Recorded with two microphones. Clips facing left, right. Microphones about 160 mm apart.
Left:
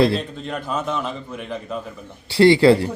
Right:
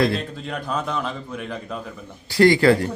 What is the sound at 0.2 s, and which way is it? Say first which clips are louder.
A man's voice: left 1 dB; centre (ahead or behind).